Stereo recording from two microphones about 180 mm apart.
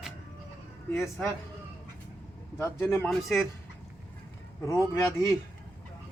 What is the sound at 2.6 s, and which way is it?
Speech, 15° left (ahead or behind).